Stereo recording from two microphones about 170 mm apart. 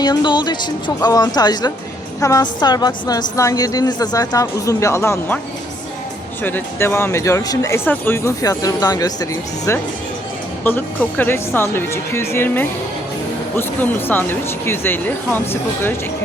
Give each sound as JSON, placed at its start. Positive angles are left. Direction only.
{"t": 0.0, "sound": "a woman's voice", "side_deg": 25}
{"t": 6.4, "sound": "speech", "side_deg": 10}